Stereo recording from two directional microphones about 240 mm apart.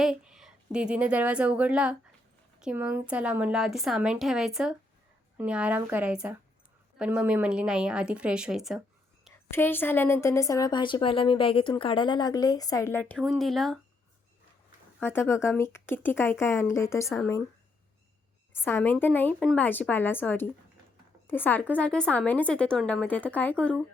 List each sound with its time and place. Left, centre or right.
0.0 s a woman's voice: centre
9.5 s a woman's voice: centre
15.0 s a woman's voice: centre
18.5 s a woman's voice: centre